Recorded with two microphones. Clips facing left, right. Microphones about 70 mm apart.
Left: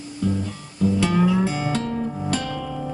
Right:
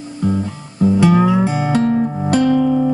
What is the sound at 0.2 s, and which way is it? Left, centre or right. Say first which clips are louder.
Music: right 6 dB; right.